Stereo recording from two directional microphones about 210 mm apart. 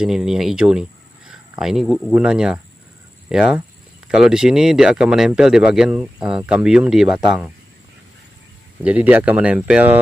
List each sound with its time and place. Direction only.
0.0 s speech: centre (ahead or behind)
8.8 s speech: 5° right (ahead or behind)